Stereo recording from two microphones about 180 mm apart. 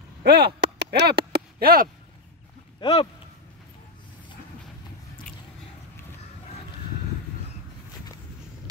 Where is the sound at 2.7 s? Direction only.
30° left (ahead or behind).